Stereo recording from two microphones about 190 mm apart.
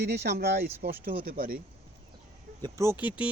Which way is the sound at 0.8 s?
50° right (ahead or behind).